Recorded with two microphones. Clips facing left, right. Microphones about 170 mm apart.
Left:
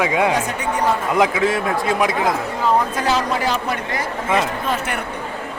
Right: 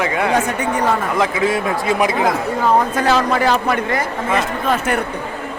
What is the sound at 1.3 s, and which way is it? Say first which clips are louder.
Speech: right 1 dB; centre (ahead or behind).